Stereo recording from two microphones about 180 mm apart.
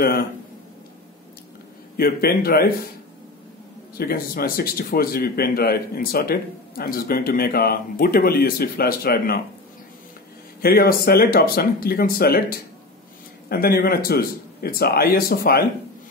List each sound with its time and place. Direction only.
2.0 s speech: 55° left (ahead or behind)
3.9 s speech: 55° left (ahead or behind)
10.6 s speech: 55° left (ahead or behind)